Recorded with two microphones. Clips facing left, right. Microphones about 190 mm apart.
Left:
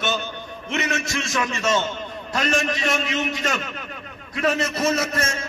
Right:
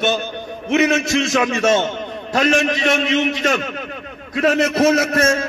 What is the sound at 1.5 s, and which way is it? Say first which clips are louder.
A man's voice: right 6 dB; 60° right (ahead or behind).